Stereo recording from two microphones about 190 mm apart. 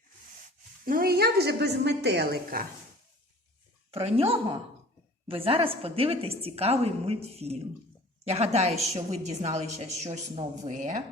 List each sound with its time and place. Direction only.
0.9 s a woman's voice: 50° right (ahead or behind)
3.9 s a woman's voice: 30° right (ahead or behind)